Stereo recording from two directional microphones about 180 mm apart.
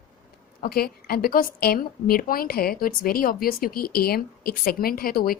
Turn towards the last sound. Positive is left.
turn(degrees=55)  # may be behind; listen again after turning